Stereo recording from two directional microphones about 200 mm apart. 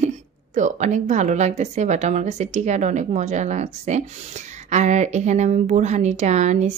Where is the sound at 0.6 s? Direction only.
40° right (ahead or behind).